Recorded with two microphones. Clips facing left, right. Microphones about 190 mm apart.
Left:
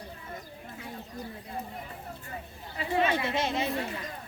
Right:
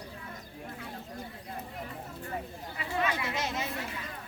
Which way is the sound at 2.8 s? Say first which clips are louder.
Left 5 dB; 25° left (ahead or behind).